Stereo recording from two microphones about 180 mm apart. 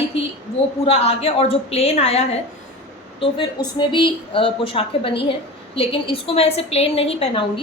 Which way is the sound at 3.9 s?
30° left (ahead or behind).